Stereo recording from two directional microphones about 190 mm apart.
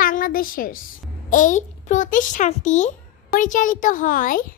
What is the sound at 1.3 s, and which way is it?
A child's voice, 40° left (ahead or behind).